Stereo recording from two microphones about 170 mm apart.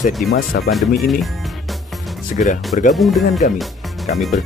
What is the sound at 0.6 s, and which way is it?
Speech, centre (ahead or behind).